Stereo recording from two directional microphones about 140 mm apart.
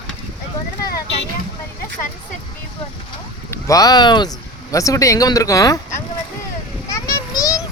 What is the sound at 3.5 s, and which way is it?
Speech, 25° left (ahead or behind).